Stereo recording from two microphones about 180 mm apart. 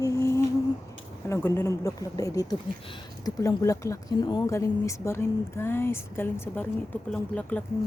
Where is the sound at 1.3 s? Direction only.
10° left (ahead or behind).